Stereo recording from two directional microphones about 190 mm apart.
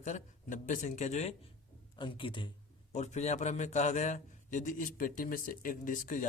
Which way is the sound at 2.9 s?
35° left (ahead or behind).